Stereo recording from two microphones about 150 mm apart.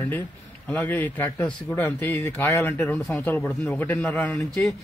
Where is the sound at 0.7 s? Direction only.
10° left (ahead or behind).